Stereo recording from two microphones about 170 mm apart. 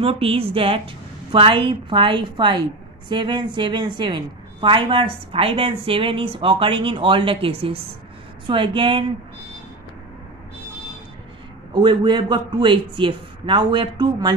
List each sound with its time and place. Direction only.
0.0 s a woman's voice: 35° right (ahead or behind)
11.7 s a man's voice: 25° right (ahead or behind)